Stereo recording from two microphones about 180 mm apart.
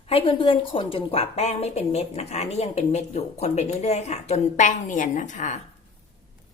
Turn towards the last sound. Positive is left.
turn(degrees=45)  # may be behind; listen again after turning